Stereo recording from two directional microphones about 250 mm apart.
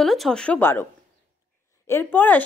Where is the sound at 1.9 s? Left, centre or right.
Centre.